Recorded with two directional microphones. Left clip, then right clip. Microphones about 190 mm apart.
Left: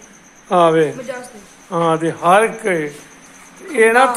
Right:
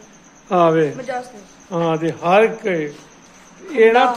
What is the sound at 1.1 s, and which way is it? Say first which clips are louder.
Speech: right 3 dB; 40° right (ahead or behind).